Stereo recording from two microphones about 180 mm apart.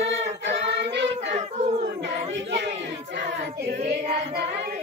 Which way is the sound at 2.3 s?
85° right.